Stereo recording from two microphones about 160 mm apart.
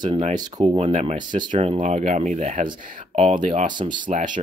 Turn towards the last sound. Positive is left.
turn(degrees=-55)  # may be behind; listen again after turning